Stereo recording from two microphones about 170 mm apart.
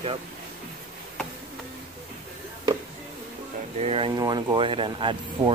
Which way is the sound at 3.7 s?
35° right (ahead or behind).